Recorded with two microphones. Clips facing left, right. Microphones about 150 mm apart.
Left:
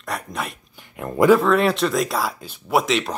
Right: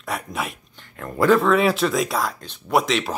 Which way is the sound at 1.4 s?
Centre (ahead or behind).